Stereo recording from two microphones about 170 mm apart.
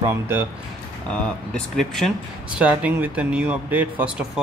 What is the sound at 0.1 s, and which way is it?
Speech, 15° right (ahead or behind).